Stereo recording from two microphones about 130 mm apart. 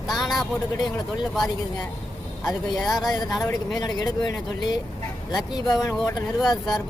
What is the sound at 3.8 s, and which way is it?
Speech, 30° left (ahead or behind).